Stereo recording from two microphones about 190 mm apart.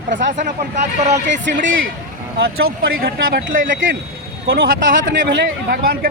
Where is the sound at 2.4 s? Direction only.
55° right (ahead or behind).